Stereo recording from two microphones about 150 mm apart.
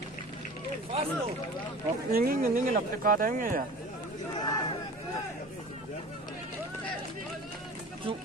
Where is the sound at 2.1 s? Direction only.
75° right (ahead or behind).